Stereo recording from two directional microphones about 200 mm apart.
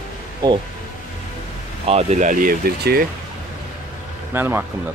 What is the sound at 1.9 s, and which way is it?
Speech, 30° right (ahead or behind).